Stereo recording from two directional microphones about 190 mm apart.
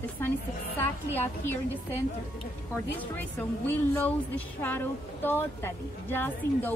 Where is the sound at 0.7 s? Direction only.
10° left (ahead or behind).